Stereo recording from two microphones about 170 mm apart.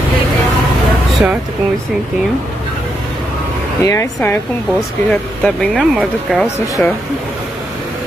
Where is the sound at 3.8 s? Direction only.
15° left (ahead or behind).